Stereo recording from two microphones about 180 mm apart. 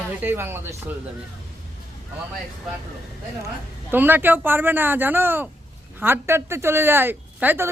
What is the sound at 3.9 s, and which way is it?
Speech, 10° right (ahead or behind).